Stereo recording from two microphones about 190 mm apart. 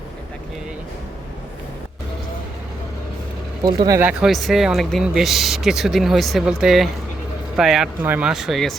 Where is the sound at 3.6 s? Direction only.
20° right (ahead or behind).